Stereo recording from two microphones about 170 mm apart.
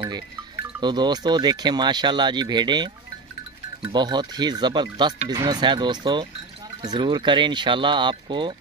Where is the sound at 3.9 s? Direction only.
25° right (ahead or behind).